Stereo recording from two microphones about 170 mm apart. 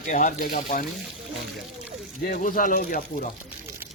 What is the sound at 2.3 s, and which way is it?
Speech, 55° left (ahead or behind).